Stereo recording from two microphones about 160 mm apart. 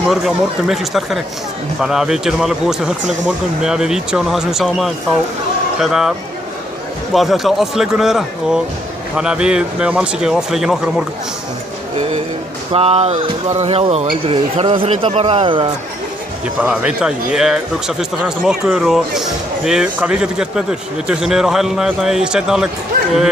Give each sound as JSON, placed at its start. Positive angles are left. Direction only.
{"t": 0.1, "sound": "speech", "side_deg": 0}
{"t": 7.2, "sound": "speech", "side_deg": 0}
{"t": 12.7, "sound": "speech", "side_deg": -40}
{"t": 16.6, "sound": "speech", "side_deg": -5}